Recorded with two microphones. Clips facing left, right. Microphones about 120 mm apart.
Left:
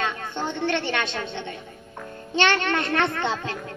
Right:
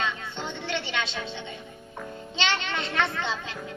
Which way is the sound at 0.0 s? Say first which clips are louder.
Left 4 dB; 55° left (ahead or behind).